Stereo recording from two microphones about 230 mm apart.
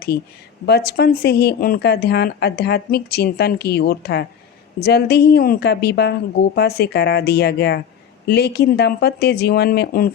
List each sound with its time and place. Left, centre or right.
0.6 s speech: left